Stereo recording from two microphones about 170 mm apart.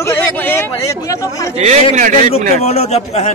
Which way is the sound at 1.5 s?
40° right (ahead or behind).